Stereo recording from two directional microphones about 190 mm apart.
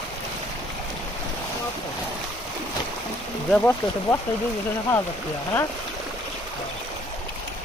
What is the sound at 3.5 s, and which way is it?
Speech, 10° left (ahead or behind).